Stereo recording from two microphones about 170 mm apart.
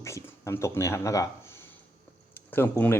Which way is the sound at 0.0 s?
15° left (ahead or behind).